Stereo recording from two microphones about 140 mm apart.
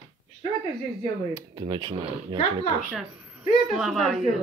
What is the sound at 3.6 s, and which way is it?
Speech, centre (ahead or behind).